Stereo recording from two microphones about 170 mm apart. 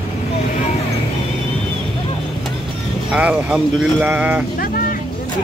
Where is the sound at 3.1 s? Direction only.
5° right (ahead or behind).